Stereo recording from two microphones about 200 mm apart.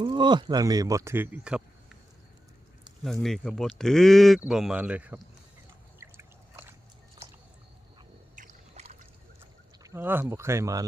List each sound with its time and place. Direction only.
0.0 s speech: 20° right (ahead or behind); by 2.0 s 5° right (ahead or behind)
3.0 s speech: centre (ahead or behind)
6.0 s a sound: 10° right (ahead or behind)
8.4 s rowboat: 35° right (ahead or behind)
9.8 s speech: 10° right (ahead or behind)